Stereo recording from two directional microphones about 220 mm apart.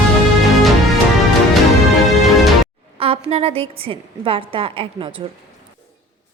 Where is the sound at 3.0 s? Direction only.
25° right (ahead or behind).